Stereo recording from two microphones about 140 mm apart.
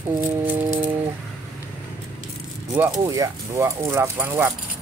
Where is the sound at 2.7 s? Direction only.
20° right (ahead or behind).